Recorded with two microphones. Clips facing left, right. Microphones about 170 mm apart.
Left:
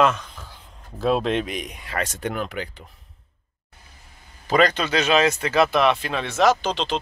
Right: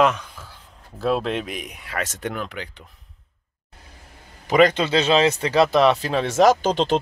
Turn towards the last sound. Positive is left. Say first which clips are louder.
# right 3 dB
turn(degrees=-50)  # may be behind; listen again after turning